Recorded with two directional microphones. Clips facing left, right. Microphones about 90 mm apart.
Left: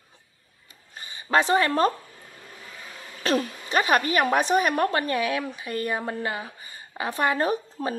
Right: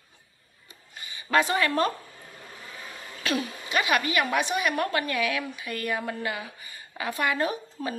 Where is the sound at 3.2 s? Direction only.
40° left (ahead or behind).